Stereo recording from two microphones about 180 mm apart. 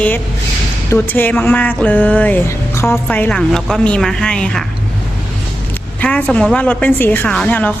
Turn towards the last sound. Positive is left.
turn(degrees=10)  # may be behind; listen again after turning